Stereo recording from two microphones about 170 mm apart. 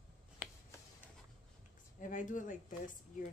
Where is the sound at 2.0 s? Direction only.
50° left (ahead or behind).